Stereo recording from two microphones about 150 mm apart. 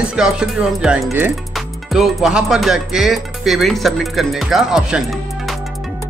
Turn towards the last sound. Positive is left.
turn(degrees=0)  # may be behind; listen again after turning